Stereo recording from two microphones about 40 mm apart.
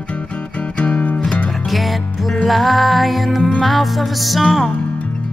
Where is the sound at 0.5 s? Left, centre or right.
Left.